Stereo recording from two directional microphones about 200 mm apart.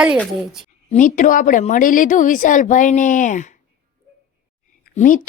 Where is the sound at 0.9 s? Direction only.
40° left (ahead or behind).